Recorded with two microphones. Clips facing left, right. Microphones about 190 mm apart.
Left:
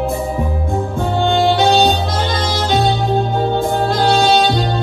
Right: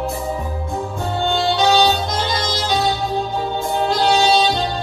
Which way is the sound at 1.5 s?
55° left (ahead or behind).